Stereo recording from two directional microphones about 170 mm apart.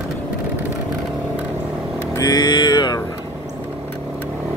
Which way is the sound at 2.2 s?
25° left (ahead or behind).